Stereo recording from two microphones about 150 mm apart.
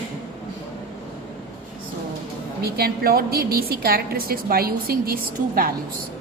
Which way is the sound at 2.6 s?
90° right.